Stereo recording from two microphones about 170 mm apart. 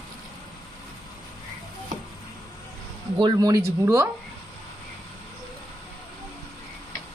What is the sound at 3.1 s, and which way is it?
Speech, 25° right (ahead or behind).